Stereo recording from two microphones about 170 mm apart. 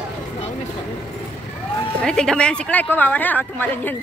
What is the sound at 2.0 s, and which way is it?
Speech, 5° left (ahead or behind).